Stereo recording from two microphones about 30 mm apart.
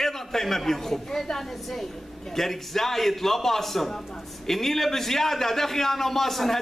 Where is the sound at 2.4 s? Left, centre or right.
Centre.